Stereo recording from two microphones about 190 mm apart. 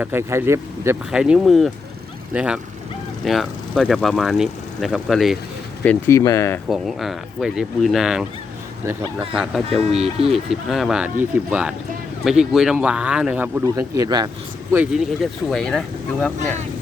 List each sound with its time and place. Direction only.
0.0 s speech: 10° right (ahead or behind)
5.8 s speech: 10° left (ahead or behind)
6.7 s speech: centre (ahead or behind)
9.3 s speech: 5° right (ahead or behind)
9.6 s speech: 30° right (ahead or behind)
10.5 s speech: centre (ahead or behind); by 14.3 s 20° right (ahead or behind)
14.7 s speech: 5° right (ahead or behind)